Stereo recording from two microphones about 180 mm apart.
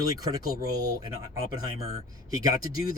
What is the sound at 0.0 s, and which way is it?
Speech, 20° right (ahead or behind).